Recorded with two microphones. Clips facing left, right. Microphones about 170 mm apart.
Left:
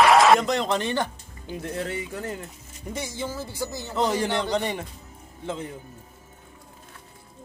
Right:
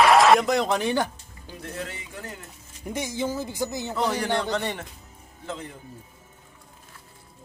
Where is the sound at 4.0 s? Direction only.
20° left (ahead or behind).